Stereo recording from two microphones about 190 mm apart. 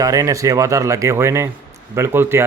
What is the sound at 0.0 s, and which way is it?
Speech, 15° right (ahead or behind).